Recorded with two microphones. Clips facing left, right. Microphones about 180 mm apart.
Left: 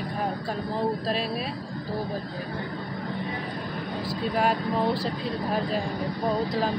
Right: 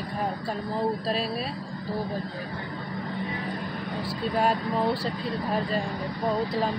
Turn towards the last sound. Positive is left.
turn(degrees=0)  # may be behind; listen again after turning